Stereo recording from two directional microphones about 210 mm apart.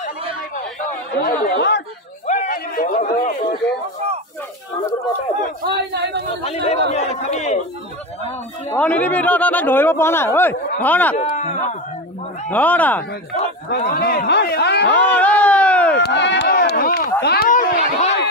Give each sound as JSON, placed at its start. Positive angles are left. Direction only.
{"t": 0.8, "sound": "speech", "side_deg": 40}
{"t": 2.2, "sound": "a sound", "side_deg": 35}
{"t": 5.6, "sound": "speech", "side_deg": -50}
{"t": 6.4, "sound": "a man's voice", "side_deg": 30}
{"t": 8.7, "sound": "speech", "side_deg": 5}
{"t": 11.1, "sound": "speech", "side_deg": 35}
{"t": 12.4, "sound": "speech", "side_deg": 10}
{"t": 13.7, "sound": "speech", "side_deg": 45}
{"t": 15.0, "sound": "speech", "side_deg": 5}
{"t": 16.0, "sound": "speech", "side_deg": 55}
{"t": 17.2, "sound": "a sound", "side_deg": 50}